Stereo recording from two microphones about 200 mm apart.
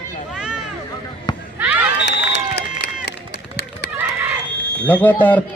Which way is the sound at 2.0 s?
55° left (ahead or behind).